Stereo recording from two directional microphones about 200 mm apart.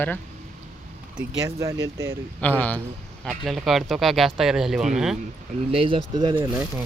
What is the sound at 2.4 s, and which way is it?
A man's voice, 10° left (ahead or behind).